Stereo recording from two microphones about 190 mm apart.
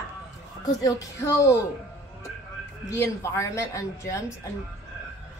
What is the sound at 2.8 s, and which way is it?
Speech, 15° left (ahead or behind).